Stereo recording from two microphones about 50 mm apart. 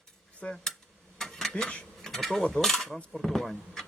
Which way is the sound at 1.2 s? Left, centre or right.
Centre.